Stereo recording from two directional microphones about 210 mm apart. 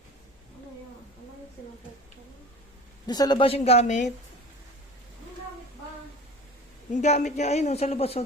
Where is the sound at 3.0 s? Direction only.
20° left (ahead or behind); by 4.1 s 35° left (ahead or behind).